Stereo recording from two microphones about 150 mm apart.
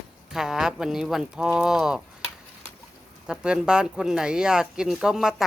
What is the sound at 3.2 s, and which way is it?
Speech, 5° right (ahead or behind).